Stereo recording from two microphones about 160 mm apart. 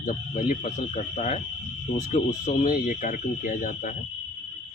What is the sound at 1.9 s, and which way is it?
Speech, 55° left (ahead or behind).